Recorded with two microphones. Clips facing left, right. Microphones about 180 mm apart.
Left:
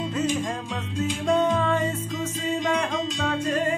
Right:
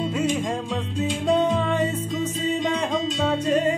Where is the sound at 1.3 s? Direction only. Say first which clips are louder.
Even; 20° right (ahead or behind).